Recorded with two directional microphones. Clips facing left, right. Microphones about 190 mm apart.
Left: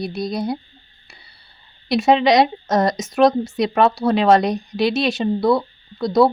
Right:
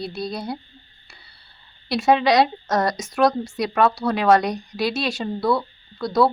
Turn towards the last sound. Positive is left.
turn(degrees=20)  # may be behind; listen again after turning